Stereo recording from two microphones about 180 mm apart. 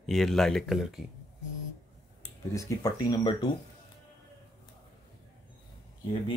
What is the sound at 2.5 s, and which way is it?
Speech, 20° left (ahead or behind).